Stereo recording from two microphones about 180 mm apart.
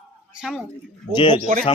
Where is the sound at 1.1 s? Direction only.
25° left (ahead or behind).